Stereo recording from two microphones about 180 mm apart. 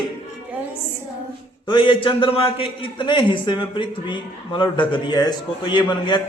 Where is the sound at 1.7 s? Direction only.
30° left (ahead or behind).